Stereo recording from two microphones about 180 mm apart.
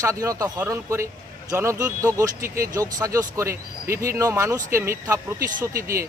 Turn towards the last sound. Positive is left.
turn(degrees=-15)  # may be behind; listen again after turning